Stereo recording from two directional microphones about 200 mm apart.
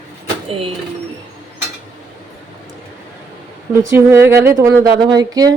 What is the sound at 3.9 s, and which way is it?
A woman's voice, 15° right (ahead or behind).